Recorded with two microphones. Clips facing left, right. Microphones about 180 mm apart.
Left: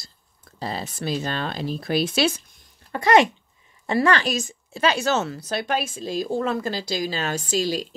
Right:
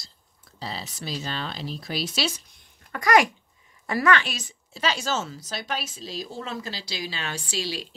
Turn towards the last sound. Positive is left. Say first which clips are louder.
# left 7 dB
turn(degrees=45)  # may be behind; listen again after turning